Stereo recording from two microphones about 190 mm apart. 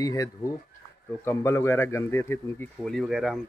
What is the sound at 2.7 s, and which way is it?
Speech, centre (ahead or behind).